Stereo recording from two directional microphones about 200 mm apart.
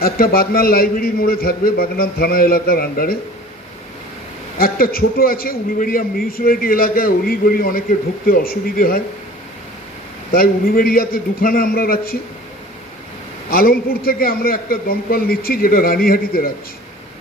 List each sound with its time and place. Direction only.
0.0 s a man's voice: 50° left (ahead or behind)
4.5 s a man's voice: 50° left (ahead or behind)
10.3 s a man's voice: 45° left (ahead or behind)
13.5 s a man's voice: 50° left (ahead or behind)